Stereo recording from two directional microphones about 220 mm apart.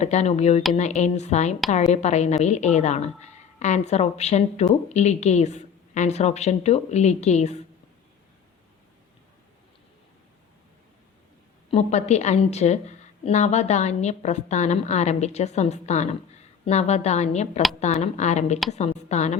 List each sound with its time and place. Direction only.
0.0 s a woman's voice: 30° left (ahead or behind)
11.7 s a woman's voice: 30° left (ahead or behind)